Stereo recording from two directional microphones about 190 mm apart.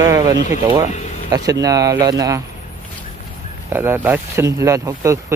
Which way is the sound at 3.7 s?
10° right (ahead or behind).